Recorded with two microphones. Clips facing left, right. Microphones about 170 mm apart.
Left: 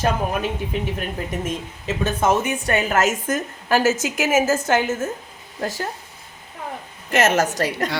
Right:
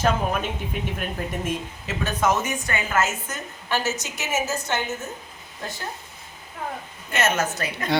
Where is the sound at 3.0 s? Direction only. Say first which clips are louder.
Left 5 dB; 90° left.